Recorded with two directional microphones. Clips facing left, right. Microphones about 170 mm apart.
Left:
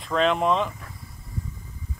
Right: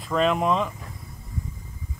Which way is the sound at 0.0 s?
5° right (ahead or behind).